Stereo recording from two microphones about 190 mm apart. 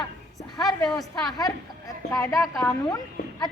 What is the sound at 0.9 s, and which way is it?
Speech, centre (ahead or behind).